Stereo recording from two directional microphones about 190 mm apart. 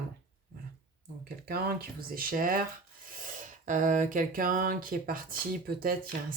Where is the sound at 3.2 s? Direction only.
45° right (ahead or behind).